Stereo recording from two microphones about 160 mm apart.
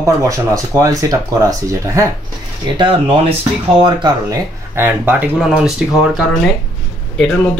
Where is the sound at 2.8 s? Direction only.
35° right (ahead or behind).